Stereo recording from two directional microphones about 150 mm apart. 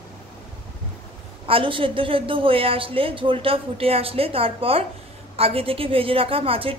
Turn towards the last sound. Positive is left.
turn(degrees=-40)  # may be behind; listen again after turning